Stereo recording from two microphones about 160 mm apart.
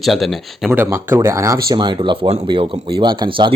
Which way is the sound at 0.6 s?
15° right (ahead or behind).